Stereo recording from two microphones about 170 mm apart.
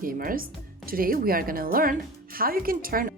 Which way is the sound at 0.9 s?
60° right (ahead or behind).